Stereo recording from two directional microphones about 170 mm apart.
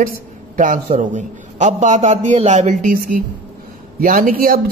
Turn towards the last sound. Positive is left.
turn(degrees=-55)  # may be behind; listen again after turning